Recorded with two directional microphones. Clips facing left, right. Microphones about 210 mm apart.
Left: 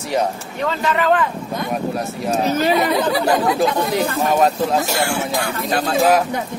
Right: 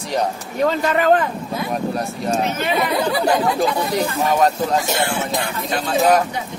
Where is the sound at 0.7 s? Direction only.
40° right (ahead or behind).